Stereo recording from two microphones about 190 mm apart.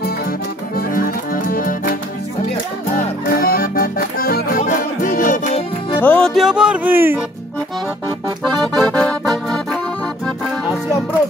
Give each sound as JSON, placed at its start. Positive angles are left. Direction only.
{"t": 0.7, "sound": "music", "side_deg": 50}
{"t": 3.3, "sound": "music", "side_deg": 50}
{"t": 5.9, "sound": "speech", "side_deg": 5}
{"t": 8.7, "sound": "accordion", "side_deg": 5}